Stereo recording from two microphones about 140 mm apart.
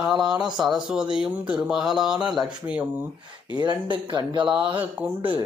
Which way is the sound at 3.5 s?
30° right (ahead or behind).